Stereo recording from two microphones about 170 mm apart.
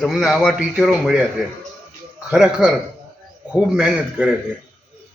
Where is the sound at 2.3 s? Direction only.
5° right (ahead or behind).